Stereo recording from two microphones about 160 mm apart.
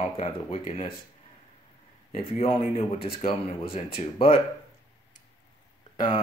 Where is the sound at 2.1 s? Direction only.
40° left (ahead or behind).